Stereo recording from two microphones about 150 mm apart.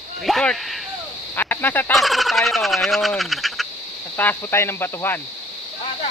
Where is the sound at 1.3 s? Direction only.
10° left (ahead or behind).